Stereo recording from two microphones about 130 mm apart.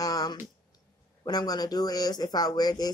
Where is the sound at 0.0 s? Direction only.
30° left (ahead or behind).